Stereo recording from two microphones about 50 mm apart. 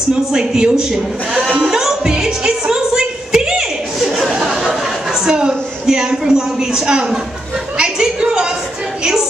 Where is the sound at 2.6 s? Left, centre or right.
Centre.